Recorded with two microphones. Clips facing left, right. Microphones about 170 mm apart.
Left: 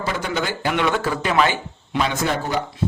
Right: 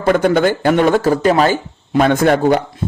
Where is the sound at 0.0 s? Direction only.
55° right (ahead or behind).